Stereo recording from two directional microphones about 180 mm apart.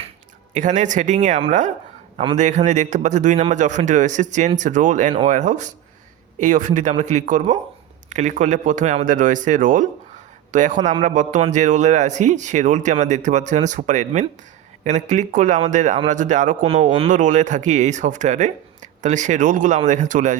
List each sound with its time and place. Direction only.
0.5 s speech: 45° right (ahead or behind)